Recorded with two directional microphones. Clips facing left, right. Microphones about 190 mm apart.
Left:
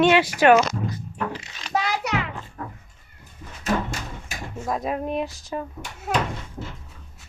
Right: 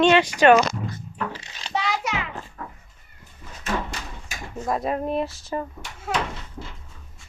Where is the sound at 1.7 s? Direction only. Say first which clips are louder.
Left 2 dB; 30° right (ahead or behind).